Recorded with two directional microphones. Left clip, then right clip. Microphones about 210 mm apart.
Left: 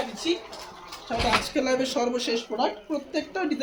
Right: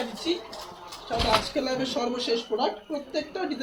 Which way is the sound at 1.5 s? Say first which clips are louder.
Left 3 dB; 55° left (ahead or behind).